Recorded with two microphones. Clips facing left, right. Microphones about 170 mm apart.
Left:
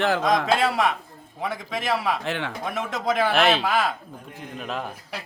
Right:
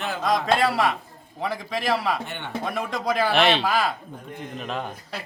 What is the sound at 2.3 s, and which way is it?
Speech, 90° left.